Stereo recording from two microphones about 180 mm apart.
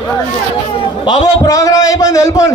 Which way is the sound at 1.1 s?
20° left (ahead or behind).